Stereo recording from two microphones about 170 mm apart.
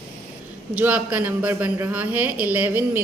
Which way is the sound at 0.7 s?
10° right (ahead or behind).